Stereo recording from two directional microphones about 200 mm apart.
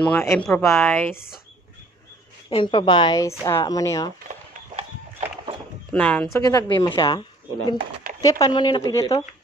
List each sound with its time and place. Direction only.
0.0 s a woman's voice: 10° left (ahead or behind)
2.5 s a woman's voice: 25° left (ahead or behind)
4.3 s horse: 35° right (ahead or behind)
5.9 s a woman's voice: 5° left (ahead or behind)
6.4 s speech: 15° left (ahead or behind)